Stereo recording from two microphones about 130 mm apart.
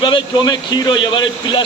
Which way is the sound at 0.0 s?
35° left (ahead or behind).